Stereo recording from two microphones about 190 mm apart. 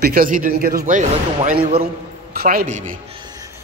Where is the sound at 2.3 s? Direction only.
50° right (ahead or behind).